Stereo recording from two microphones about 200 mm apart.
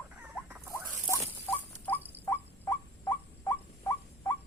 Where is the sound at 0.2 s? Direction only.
10° right (ahead or behind).